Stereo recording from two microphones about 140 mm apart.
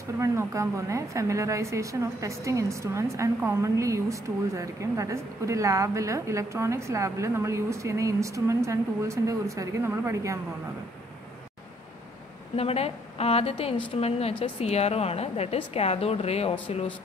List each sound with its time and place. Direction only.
0.2 s a woman's voice: 20° right (ahead or behind)
12.5 s a woman's voice: 45° left (ahead or behind)